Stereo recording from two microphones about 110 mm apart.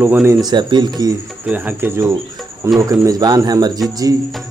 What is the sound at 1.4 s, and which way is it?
Speech, 15° right (ahead or behind).